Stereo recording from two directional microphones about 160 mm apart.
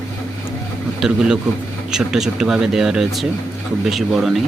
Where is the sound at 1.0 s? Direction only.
5° right (ahead or behind).